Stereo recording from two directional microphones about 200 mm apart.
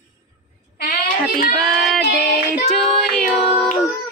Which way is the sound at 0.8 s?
45° left (ahead or behind).